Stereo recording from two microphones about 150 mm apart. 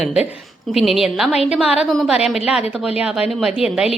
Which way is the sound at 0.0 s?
5° right (ahead or behind).